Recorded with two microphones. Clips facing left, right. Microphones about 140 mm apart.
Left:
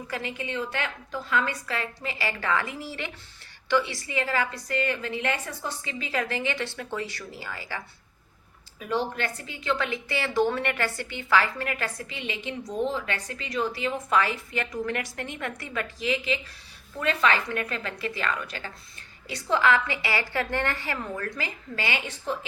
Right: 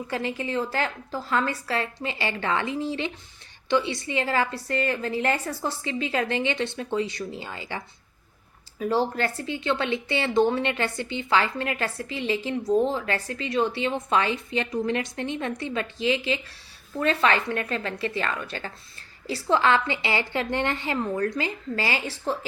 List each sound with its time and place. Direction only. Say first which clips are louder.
0.1 s a woman's voice: right 4 dB; 30° right (ahead or behind)
8.8 s a woman's voice: right 4 dB; 35° right (ahead or behind)